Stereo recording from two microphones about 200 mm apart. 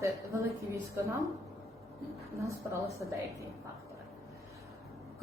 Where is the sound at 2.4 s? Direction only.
15° right (ahead or behind).